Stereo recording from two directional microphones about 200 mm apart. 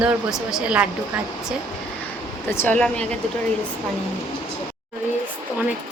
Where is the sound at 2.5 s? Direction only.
10° left (ahead or behind).